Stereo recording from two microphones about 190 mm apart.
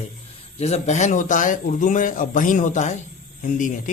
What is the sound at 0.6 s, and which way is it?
Speech, 35° left (ahead or behind).